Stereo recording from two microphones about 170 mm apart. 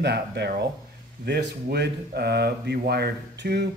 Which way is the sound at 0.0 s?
80° right.